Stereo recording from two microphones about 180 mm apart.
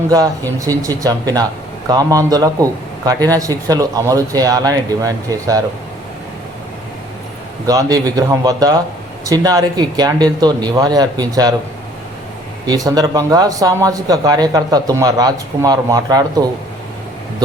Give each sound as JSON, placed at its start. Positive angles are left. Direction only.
{"t": 0.6, "sound": "speech", "side_deg": -20}
{"t": 7.7, "sound": "speech", "side_deg": -20}
{"t": 12.6, "sound": "speech", "side_deg": -20}